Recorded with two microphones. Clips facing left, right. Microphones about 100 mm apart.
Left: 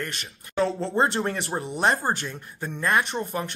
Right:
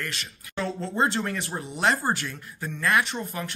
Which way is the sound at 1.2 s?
30° left (ahead or behind).